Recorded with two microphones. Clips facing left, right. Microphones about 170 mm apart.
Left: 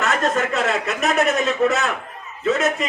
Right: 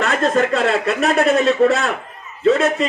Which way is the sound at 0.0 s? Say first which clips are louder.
Right 4 dB; 35° right (ahead or behind).